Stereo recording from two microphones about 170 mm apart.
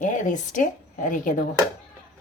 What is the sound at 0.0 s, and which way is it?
A woman's voice, 50° left (ahead or behind).